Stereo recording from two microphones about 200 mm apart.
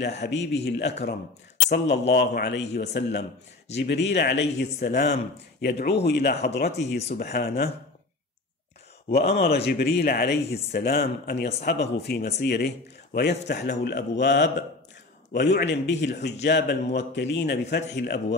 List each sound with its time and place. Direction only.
0.0 s a man's voice: 60° left (ahead or behind)
9.3 s a man's voice: 55° left (ahead or behind)